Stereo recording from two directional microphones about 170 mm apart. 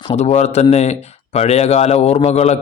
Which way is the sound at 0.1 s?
40° left (ahead or behind).